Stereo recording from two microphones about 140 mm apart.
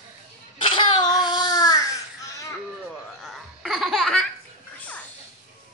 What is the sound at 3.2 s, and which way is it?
Laughter, centre (ahead or behind).